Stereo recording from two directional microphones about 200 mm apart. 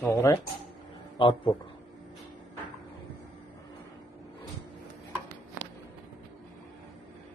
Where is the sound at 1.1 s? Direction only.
25° left (ahead or behind).